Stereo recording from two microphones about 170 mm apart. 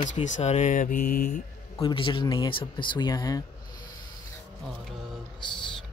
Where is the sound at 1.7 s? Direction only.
25° left (ahead or behind).